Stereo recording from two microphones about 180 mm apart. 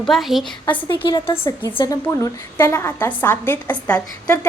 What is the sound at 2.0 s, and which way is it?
A woman's voice, 10° left (ahead or behind).